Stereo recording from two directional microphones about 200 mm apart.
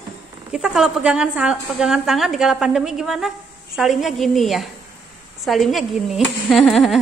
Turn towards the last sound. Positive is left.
turn(degrees=0)  # may be behind; listen again after turning